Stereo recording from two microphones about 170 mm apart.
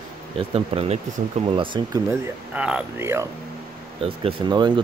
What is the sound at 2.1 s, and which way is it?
Speech, 5° right (ahead or behind).